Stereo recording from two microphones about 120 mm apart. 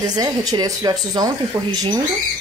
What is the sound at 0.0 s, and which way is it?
Speech, 30° right (ahead or behind).